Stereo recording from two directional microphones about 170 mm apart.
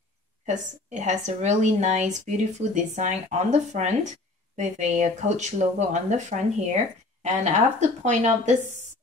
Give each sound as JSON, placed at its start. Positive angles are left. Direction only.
{"t": 0.5, "sound": "a woman's voice", "side_deg": -45}
{"t": 7.2, "sound": "a woman's voice", "side_deg": -40}